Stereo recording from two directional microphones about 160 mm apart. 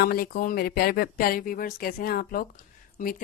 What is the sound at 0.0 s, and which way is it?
Speech, 70° left (ahead or behind).